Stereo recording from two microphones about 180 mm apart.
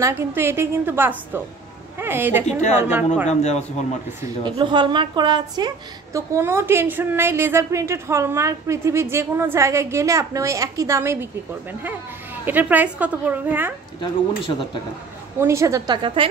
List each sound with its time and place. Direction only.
0.0 s a woman's voice: 15° right (ahead or behind)
2.4 s a woman's voice: 40° left (ahead or behind)
4.5 s a woman's voice: 25° right (ahead or behind)
6.1 s a woman's voice: 15° right (ahead or behind)
12.4 s a woman's voice: 10° right (ahead or behind)
14.0 s speech: 25° left (ahead or behind)
15.4 s a woman's voice: 15° right (ahead or behind)